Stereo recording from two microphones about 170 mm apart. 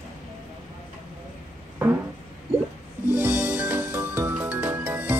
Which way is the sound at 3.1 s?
15° right (ahead or behind).